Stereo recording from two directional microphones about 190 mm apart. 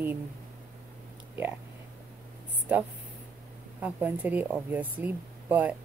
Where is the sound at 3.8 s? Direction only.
10° right (ahead or behind).